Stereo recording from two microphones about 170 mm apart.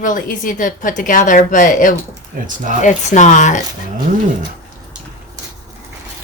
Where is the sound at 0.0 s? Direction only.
50° left (ahead or behind).